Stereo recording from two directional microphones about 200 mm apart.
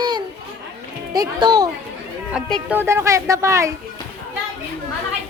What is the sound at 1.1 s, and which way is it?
Speech, 20° right (ahead or behind).